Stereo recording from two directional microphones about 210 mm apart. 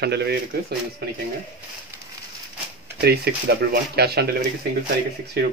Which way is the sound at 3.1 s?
50° right (ahead or behind).